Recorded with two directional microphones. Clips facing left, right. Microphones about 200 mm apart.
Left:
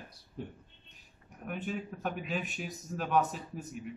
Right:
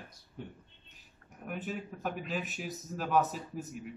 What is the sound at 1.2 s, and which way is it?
Speech, centre (ahead or behind).